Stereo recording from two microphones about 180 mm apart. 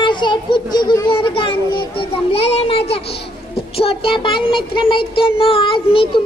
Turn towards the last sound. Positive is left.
turn(degrees=30)  # may be behind; listen again after turning